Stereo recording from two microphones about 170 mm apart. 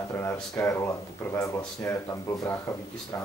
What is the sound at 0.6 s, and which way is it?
Speech, 10° left (ahead or behind).